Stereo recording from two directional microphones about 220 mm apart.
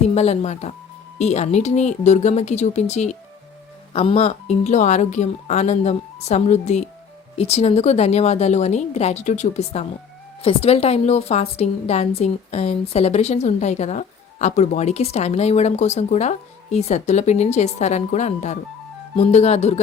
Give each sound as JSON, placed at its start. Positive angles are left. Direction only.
{"t": 0.1, "sound": "a woman's voice", "side_deg": 30}